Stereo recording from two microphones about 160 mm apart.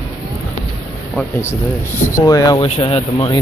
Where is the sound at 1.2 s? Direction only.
15° left (ahead or behind).